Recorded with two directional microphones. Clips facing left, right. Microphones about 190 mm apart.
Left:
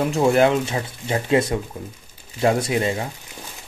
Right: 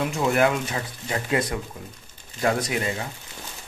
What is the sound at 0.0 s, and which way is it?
Speech, 30° left (ahead or behind).